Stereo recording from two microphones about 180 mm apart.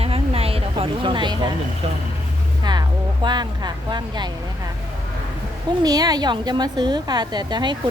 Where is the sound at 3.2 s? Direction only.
25° right (ahead or behind).